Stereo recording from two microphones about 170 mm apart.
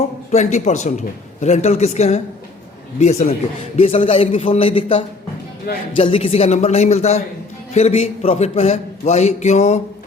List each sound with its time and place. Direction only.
0.3 s a man's voice: 40° left (ahead or behind)
5.7 s speech: 65° left (ahead or behind)
6.0 s a man's voice: 35° left (ahead or behind)